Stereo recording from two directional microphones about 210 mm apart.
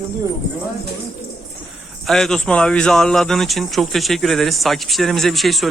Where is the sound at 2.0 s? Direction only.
Centre (ahead or behind).